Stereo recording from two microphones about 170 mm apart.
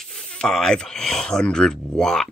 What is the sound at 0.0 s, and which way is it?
Speech, 5° left (ahead or behind).